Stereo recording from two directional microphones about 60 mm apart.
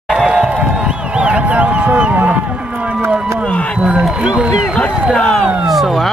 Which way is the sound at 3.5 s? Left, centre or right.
Left.